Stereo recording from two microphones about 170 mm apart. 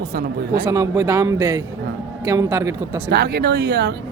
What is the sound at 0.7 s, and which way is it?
Speech, 20° right (ahead or behind).